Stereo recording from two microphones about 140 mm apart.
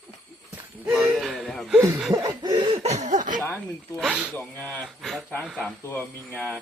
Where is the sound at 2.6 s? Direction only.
45° right (ahead or behind); by 3.4 s 70° right (ahead or behind).